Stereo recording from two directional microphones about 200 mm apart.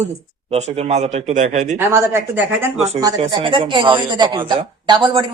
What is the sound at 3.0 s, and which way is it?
Speech, 25° right (ahead or behind).